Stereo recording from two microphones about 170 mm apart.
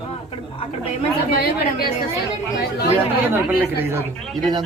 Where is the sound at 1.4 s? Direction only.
65° left (ahead or behind).